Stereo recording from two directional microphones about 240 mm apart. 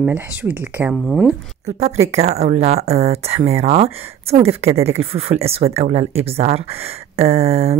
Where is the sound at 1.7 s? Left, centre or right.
Right.